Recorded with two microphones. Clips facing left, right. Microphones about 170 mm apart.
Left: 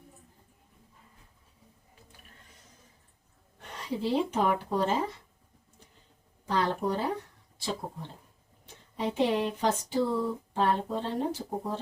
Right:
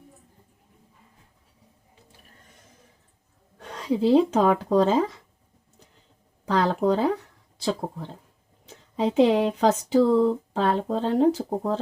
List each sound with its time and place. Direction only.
3.6 s speech: 90° right
6.4 s speech: 90° right
9.0 s speech: 90° right